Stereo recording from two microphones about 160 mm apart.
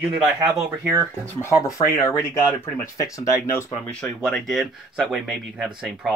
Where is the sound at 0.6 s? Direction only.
15° right (ahead or behind).